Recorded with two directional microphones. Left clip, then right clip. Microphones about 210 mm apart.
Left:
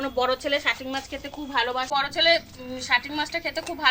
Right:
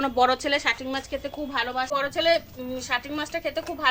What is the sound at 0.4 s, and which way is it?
A woman's voice, 40° right (ahead or behind).